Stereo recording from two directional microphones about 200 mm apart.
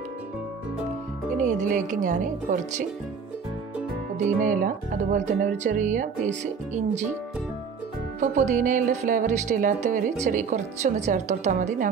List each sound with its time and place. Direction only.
1.3 s speech: 40° right (ahead or behind)
4.4 s speech: 40° right (ahead or behind)
8.2 s speech: 40° right (ahead or behind)